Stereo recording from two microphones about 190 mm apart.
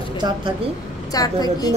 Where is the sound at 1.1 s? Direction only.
20° left (ahead or behind).